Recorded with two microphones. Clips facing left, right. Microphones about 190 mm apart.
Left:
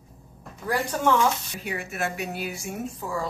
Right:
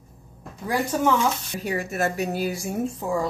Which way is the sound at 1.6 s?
40° right (ahead or behind).